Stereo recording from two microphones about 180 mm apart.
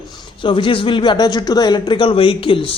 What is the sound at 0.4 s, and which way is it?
Speech, 30° left (ahead or behind).